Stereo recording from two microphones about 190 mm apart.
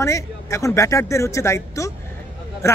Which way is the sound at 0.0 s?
15° left (ahead or behind).